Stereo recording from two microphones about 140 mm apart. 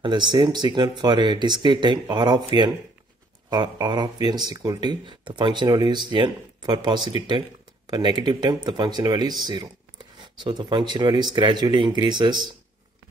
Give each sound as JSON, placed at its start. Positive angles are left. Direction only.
{"t": 0.0, "sound": "speech", "side_deg": -35}